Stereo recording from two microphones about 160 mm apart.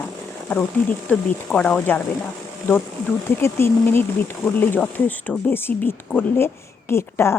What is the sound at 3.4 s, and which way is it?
Speech, 15° left (ahead or behind).